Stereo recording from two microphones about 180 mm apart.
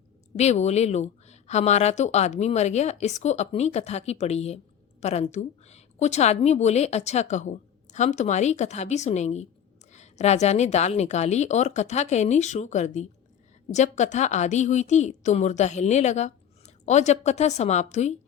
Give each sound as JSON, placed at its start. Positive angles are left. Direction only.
{"t": 0.3, "sound": "speech", "side_deg": 40}